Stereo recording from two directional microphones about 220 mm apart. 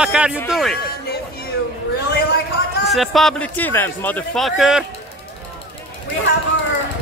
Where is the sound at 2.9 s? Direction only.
Centre (ahead or behind).